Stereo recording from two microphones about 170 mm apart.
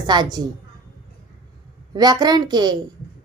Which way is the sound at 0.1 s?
25° right (ahead or behind).